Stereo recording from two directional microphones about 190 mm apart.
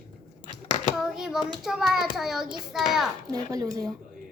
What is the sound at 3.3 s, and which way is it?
Speech, 20° right (ahead or behind).